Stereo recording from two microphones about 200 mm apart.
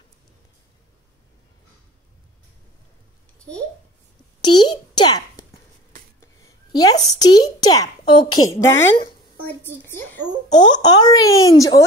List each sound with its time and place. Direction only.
4.4 s a child's voice: 20° left (ahead or behind)
6.4 s a woman's voice: 20° left (ahead or behind)
10.5 s a woman's voice: 20° left (ahead or behind)